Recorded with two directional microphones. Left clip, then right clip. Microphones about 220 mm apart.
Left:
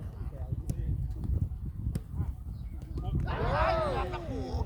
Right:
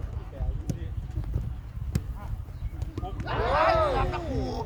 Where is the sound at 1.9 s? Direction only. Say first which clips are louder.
Right 9 dB; 10° right (ahead or behind).